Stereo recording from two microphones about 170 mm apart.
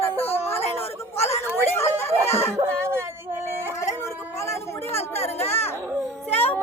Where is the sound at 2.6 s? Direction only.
15° right (ahead or behind).